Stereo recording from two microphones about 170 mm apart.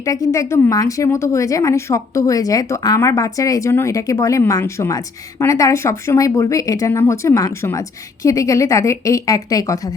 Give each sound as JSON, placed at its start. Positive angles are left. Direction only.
{"t": 0.0, "sound": "speech", "side_deg": 20}